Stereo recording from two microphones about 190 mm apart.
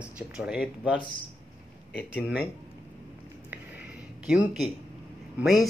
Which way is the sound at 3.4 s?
10° right (ahead or behind).